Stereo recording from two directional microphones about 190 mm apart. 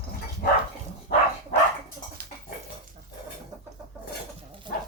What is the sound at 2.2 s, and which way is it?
Dog, 50° right (ahead or behind).